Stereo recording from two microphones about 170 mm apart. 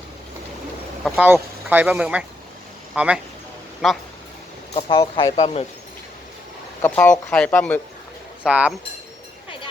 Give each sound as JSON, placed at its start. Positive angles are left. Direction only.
{"t": 1.2, "sound": "speech", "side_deg": -10}
{"t": 4.7, "sound": "speech", "side_deg": 35}
{"t": 6.8, "sound": "speech", "side_deg": 10}
{"t": 8.4, "sound": "speech", "side_deg": -5}